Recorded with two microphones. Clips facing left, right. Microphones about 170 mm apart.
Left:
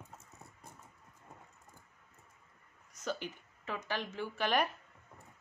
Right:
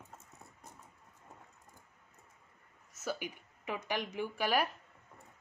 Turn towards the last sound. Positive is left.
turn(degrees=-10)  # may be behind; listen again after turning